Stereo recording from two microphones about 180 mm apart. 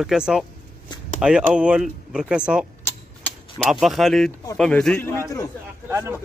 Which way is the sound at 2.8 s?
5° left (ahead or behind).